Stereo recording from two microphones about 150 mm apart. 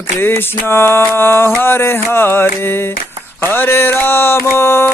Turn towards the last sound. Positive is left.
turn(degrees=15)  # may be behind; listen again after turning